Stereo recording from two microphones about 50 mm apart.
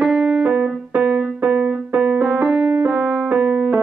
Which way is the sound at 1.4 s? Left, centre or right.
Right.